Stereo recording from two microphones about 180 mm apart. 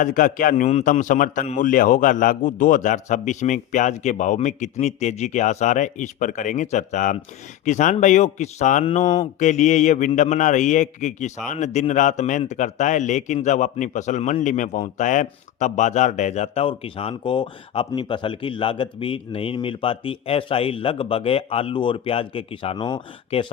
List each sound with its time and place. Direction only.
0.0 s a man's voice: 45° left (ahead or behind); by 23.5 s 25° left (ahead or behind)